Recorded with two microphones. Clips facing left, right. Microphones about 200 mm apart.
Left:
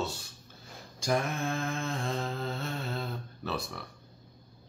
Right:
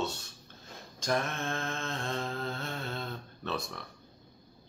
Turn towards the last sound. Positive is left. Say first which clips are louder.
# left 1 dB
turn(degrees=5)  # may be behind; listen again after turning